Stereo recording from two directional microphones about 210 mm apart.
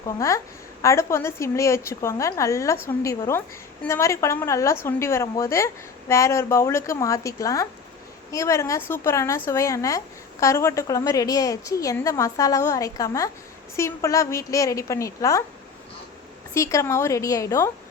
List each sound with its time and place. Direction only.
0.2 s a woman's voice: 15° left (ahead or behind)
16.6 s a woman's voice: 15° left (ahead or behind)